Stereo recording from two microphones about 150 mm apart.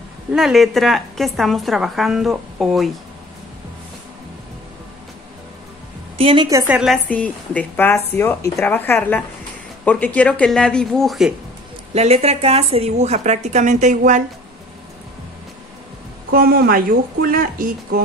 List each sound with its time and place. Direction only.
0.3 s a woman's voice: centre (ahead or behind)
6.1 s a woman's voice: 35° right (ahead or behind)
6.7 s a woman's voice: 5° right (ahead or behind)
7.1 s a woman's voice: 10° left (ahead or behind)
11.9 s a woman's voice: 45° right (ahead or behind)
16.3 s speech: 85° right; by 18.0 s 65° right (ahead or behind)